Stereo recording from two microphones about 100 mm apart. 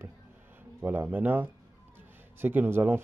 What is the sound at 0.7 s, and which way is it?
Speech, 20° right (ahead or behind).